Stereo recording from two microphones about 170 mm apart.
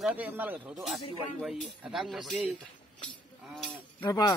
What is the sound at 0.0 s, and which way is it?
Speech, 10° right (ahead or behind).